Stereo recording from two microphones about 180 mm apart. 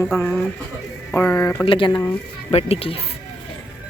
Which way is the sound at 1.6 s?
30° left (ahead or behind).